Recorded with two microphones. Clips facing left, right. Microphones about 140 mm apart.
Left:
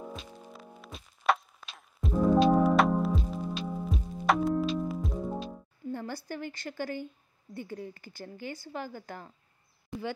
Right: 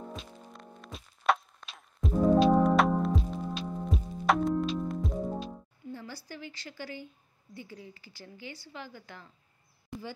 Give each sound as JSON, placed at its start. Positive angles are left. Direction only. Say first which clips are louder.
{"t": 0.1, "sound": "music", "louder": "left 1 dB", "side_deg": 0}
{"t": 5.9, "sound": "a woman's voice", "louder": "left 6 dB", "side_deg": 55}
{"t": 9.9, "sound": "speech", "louder": "left 4 dB", "side_deg": 0}